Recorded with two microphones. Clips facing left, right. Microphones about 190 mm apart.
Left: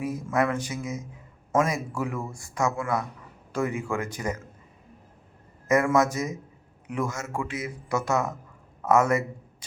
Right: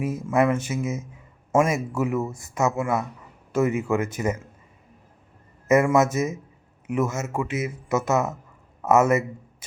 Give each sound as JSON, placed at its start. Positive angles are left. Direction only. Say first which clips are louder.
{"t": 0.0, "sound": "speech", "louder": "right 4 dB", "side_deg": -25}
{"t": 5.6, "sound": "a man's voice", "louder": "right 3 dB", "side_deg": -25}